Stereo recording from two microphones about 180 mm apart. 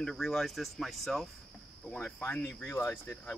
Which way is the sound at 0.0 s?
Centre (ahead or behind).